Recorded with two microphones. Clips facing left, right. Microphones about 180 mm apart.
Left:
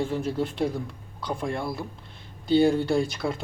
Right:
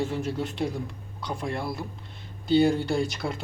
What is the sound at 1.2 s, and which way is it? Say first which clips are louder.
Speech: left 2 dB; centre (ahead or behind).